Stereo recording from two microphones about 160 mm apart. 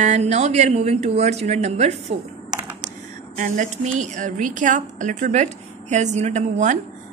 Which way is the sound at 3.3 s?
50° right (ahead or behind).